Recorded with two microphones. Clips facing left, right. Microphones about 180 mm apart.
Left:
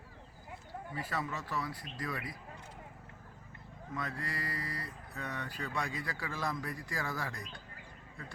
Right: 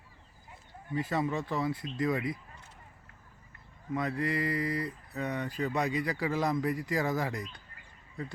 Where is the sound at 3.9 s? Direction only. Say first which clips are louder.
Right 9 dB; 20° right (ahead or behind).